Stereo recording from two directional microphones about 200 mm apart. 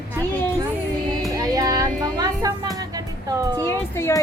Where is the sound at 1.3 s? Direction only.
20° right (ahead or behind).